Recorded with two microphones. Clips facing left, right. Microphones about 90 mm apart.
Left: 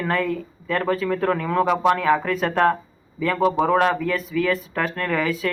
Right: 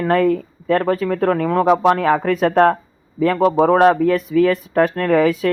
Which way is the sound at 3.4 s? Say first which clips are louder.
Right 6 dB; 40° right (ahead or behind).